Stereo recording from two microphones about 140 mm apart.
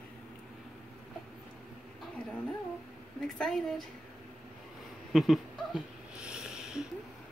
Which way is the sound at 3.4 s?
Centre (ahead or behind).